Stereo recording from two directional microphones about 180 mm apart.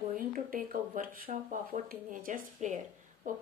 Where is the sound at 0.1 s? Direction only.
50° right (ahead or behind).